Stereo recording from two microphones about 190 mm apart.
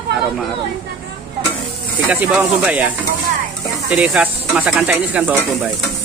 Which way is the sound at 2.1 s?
10° right (ahead or behind).